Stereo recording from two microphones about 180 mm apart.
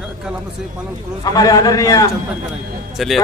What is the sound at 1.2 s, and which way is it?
Speech, 20° left (ahead or behind).